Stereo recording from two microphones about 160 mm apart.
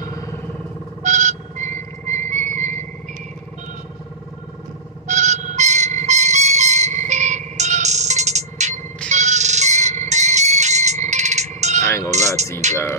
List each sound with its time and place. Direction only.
0.0 s vehicle: 20° left (ahead or behind)
1.0 s a sound: 50° right (ahead or behind)
5.0 s a sound: 45° right (ahead or behind)
6.0 s music: 50° right (ahead or behind)
9.1 s ringtone: 45° right (ahead or behind)
12.1 s music: 45° right (ahead or behind)